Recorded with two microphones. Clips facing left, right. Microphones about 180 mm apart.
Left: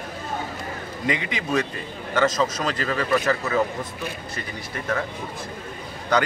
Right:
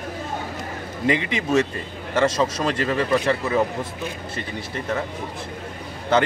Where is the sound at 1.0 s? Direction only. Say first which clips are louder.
Right 5 dB; 30° right (ahead or behind).